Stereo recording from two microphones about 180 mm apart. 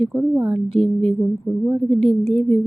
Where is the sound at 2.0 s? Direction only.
35° right (ahead or behind).